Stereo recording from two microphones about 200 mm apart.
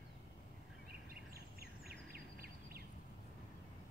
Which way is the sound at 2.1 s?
50° right (ahead or behind).